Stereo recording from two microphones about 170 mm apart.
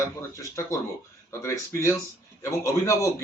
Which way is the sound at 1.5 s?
15° left (ahead or behind).